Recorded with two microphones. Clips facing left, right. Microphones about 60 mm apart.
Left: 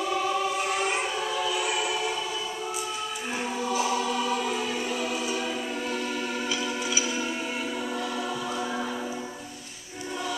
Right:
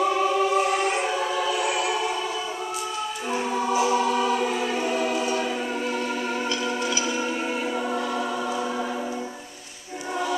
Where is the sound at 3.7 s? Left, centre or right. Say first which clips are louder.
Right 5 dB; right.